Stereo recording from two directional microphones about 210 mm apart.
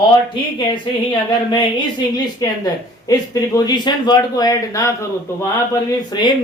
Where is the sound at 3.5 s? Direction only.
20° left (ahead or behind).